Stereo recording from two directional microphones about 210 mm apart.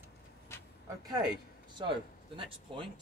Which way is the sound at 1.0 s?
20° right (ahead or behind).